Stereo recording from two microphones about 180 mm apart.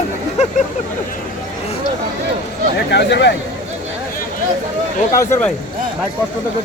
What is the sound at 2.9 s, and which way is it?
Speech, 70° left (ahead or behind).